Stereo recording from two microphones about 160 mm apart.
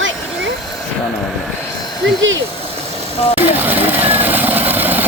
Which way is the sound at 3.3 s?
10° right (ahead or behind).